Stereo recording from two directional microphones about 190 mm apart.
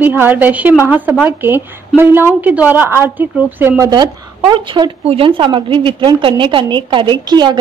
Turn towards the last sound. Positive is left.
turn(degrees=-25)  # may be behind; listen again after turning